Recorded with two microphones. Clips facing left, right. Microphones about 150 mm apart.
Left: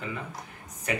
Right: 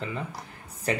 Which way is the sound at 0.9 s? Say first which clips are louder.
Right 3 dB; 30° right (ahead or behind).